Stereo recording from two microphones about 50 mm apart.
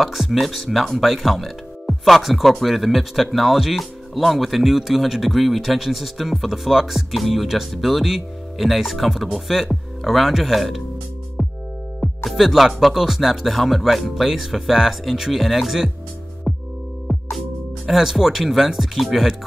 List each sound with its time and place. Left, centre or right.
0.0 s speech: centre
11.4 s music: centre
12.3 s speech: centre
16.5 s music: centre
17.1 s speech: centre